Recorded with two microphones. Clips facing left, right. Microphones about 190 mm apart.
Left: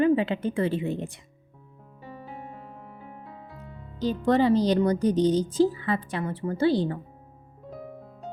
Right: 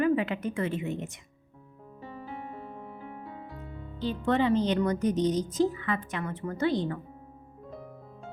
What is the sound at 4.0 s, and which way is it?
Speech, 40° left (ahead or behind).